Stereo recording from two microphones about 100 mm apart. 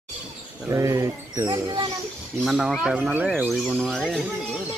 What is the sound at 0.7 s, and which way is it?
Speech, 30° right (ahead or behind).